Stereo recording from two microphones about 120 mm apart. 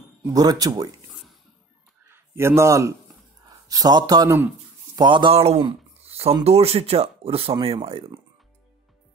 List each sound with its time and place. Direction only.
0.2 s speech: 30° right (ahead or behind)
2.0 s speech: 20° right (ahead or behind); by 5.3 s 40° right (ahead or behind)
5.3 s speech: 60° right (ahead or behind)
6.0 s a sound: 60° right (ahead or behind)
6.4 s speech: 60° right (ahead or behind)